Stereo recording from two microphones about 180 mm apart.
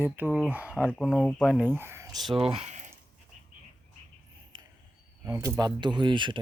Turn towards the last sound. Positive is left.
turn(degrees=-25)  # may be behind; listen again after turning